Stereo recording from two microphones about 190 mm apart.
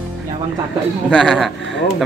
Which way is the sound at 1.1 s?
5° left (ahead or behind).